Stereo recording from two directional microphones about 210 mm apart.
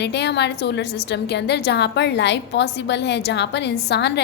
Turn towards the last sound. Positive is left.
turn(degrees=55)  # may be behind; listen again after turning